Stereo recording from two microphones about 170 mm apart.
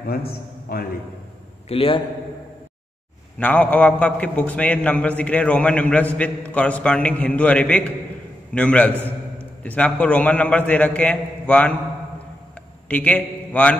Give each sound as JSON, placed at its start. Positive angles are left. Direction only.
{"t": 0.1, "sound": "a man's voice", "side_deg": 65}
{"t": 1.7, "sound": "a man's voice", "side_deg": 35}
{"t": 3.3, "sound": "a man's voice", "side_deg": 10}
{"t": 12.8, "sound": "a man's voice", "side_deg": 10}